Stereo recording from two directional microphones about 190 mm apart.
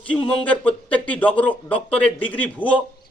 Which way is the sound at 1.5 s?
30° left (ahead or behind).